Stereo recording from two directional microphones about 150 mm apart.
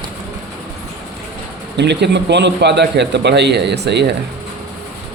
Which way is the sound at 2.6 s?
90° right.